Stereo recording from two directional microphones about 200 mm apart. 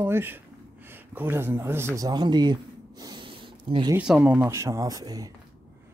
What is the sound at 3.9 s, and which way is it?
Speech, 5° right (ahead or behind).